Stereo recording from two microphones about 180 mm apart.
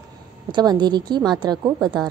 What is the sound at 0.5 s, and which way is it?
A woman's voice, 25° right (ahead or behind).